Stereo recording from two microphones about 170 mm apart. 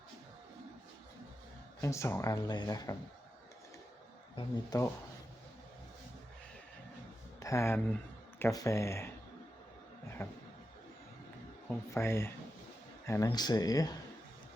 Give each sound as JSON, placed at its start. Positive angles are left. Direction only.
{"t": 1.8, "sound": "speech", "side_deg": 15}
{"t": 4.4, "sound": "speech", "side_deg": 20}
{"t": 7.3, "sound": "a sound", "side_deg": 20}
{"t": 8.4, "sound": "speech", "side_deg": 20}
{"t": 10.2, "sound": "speech", "side_deg": 15}
{"t": 11.7, "sound": "speech", "side_deg": 15}